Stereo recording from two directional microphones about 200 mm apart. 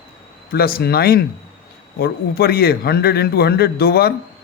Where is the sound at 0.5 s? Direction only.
50° left (ahead or behind).